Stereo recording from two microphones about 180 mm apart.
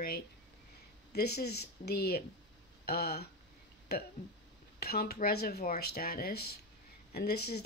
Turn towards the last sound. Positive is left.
turn(degrees=65)  # may be behind; listen again after turning